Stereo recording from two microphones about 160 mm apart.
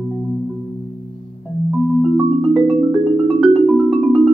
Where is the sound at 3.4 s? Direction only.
Centre (ahead or behind).